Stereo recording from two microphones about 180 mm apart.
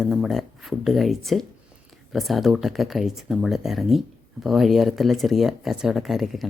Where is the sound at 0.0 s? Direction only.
Centre (ahead or behind).